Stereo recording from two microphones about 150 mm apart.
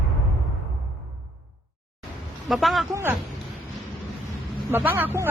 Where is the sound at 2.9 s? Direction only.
15° right (ahead or behind).